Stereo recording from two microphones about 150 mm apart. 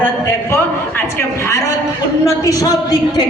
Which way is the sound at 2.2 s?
20° left (ahead or behind).